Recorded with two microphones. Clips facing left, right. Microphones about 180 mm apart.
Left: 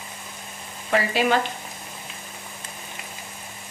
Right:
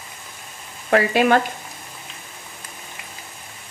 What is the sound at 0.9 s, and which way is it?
Speech, 55° right (ahead or behind).